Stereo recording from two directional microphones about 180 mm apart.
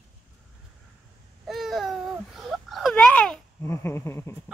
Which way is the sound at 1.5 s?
Centre (ahead or behind).